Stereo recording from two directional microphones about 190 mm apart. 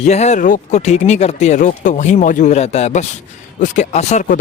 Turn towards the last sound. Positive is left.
turn(degrees=40)  # may be behind; listen again after turning